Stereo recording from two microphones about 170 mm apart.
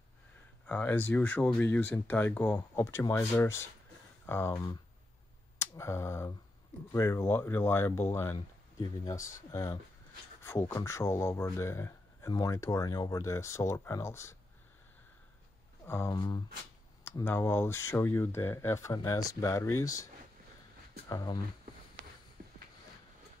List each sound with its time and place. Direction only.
0.7 s speech: 10° left (ahead or behind)
5.6 s a sound: 15° left (ahead or behind)
6.9 s speech: 20° left (ahead or behind)
15.9 s speech: 15° left (ahead or behind)
17.0 s speech: 15° left (ahead or behind)
21.1 s speech: 25° left (ahead or behind)